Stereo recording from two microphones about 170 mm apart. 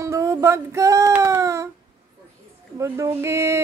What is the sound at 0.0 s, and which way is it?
Music, 15° right (ahead or behind).